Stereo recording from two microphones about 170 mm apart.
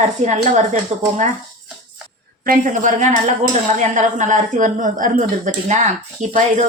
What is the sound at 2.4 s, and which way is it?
A woman's voice, 50° right (ahead or behind).